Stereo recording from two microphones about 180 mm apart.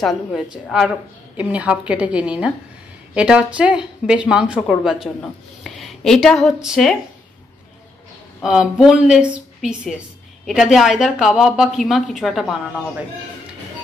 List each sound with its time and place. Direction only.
0.0 s a woman's voice: centre (ahead or behind)
8.4 s a woman's voice: 5° right (ahead or behind)